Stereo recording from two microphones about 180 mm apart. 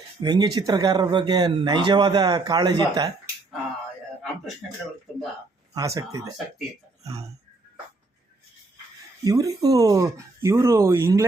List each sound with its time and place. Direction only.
0.2 s speech: 20° right (ahead or behind)
5.7 s speech: 20° right (ahead or behind)
9.2 s speech: 20° right (ahead or behind)